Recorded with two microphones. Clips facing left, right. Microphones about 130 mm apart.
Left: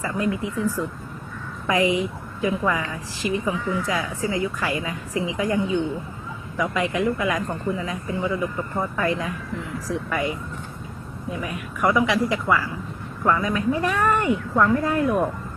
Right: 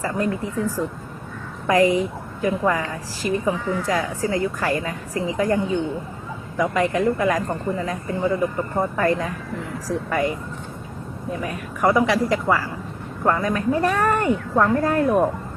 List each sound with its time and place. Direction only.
0.0 s a woman's voice: 45° right (ahead or behind)
1.6 s a woman's voice: 40° right (ahead or behind)
6.6 s a woman's voice: 40° right (ahead or behind)